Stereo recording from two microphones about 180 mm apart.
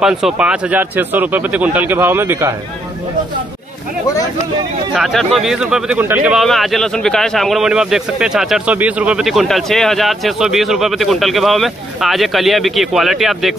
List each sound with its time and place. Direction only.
0.0 s speech: 5° right (ahead or behind)
4.9 s speech: centre (ahead or behind)